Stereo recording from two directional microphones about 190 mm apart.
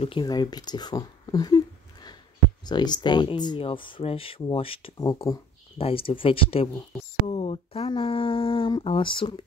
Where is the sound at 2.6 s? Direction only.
20° left (ahead or behind).